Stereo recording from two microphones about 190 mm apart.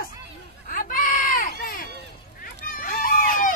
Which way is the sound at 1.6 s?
50° left (ahead or behind).